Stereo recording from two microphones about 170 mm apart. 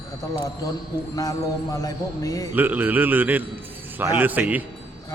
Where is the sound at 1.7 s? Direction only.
20° left (ahead or behind).